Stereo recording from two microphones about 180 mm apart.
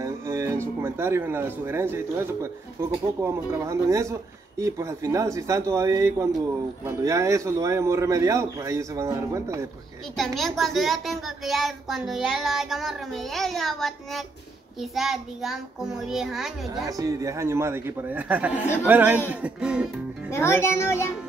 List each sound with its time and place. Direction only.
0.0 s speech: 15° right (ahead or behind)
10.1 s a child's voice: centre (ahead or behind)
16.8 s a child's voice: 20° right (ahead or behind)
20.2 s a child's voice: 15° left (ahead or behind)